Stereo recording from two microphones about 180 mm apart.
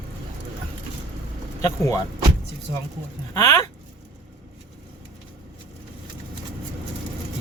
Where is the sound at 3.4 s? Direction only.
20° left (ahead or behind).